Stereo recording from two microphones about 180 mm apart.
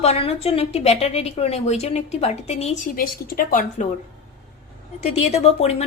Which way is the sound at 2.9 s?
55° left (ahead or behind).